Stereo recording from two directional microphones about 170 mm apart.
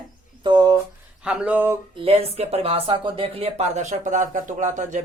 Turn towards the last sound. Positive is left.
turn(degrees=-50)  # may be behind; listen again after turning